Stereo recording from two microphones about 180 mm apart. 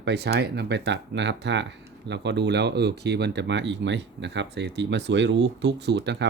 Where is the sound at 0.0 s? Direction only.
65° right (ahead or behind).